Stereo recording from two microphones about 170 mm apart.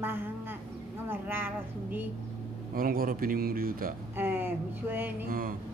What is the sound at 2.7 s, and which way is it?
Speech, 60° right (ahead or behind).